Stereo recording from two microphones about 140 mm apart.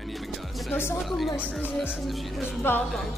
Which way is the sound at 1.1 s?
Centre (ahead or behind).